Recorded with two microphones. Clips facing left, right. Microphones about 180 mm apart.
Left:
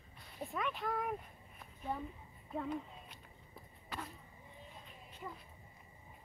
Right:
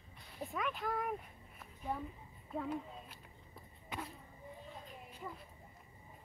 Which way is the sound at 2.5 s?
5° right (ahead or behind).